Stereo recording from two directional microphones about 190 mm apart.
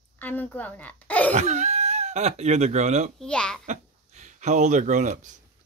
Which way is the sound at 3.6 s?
40° right (ahead or behind).